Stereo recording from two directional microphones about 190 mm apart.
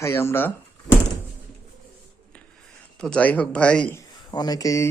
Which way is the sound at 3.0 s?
5° left (ahead or behind).